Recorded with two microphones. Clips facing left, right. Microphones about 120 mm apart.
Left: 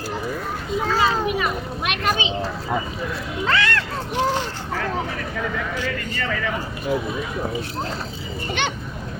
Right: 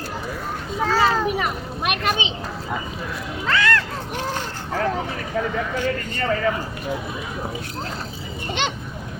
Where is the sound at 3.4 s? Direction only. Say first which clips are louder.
Right 1 dB; 30° left (ahead or behind).